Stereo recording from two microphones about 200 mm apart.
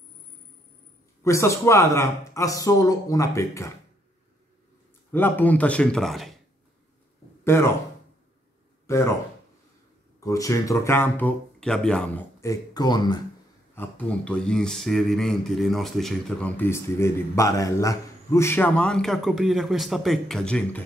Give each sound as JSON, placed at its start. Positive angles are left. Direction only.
{"t": 1.2, "sound": "speech", "side_deg": 15}
{"t": 5.1, "sound": "speech", "side_deg": 10}
{"t": 7.4, "sound": "speech", "side_deg": 10}
{"t": 8.8, "sound": "speech", "side_deg": 15}
{"t": 10.2, "sound": "speech", "side_deg": 15}
{"t": 12.4, "sound": "speech", "side_deg": 15}
{"t": 13.7, "sound": "speech", "side_deg": 5}